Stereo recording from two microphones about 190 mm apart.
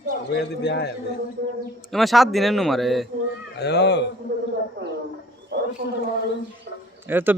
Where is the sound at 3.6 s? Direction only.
60° left (ahead or behind).